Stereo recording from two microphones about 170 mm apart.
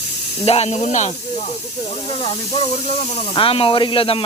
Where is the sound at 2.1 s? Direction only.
35° left (ahead or behind).